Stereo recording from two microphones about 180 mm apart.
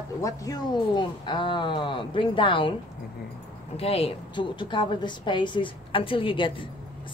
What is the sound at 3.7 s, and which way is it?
Speech, 35° left (ahead or behind).